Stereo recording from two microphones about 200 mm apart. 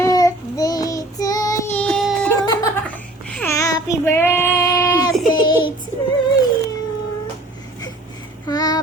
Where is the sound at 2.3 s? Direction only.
10° left (ahead or behind).